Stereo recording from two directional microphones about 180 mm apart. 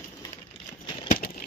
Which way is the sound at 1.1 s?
50° left (ahead or behind).